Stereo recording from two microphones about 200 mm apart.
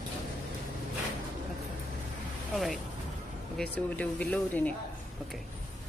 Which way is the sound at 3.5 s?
5° left (ahead or behind).